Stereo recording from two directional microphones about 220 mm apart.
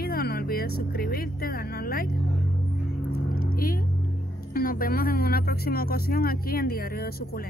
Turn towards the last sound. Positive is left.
turn(degrees=45)  # may be behind; listen again after turning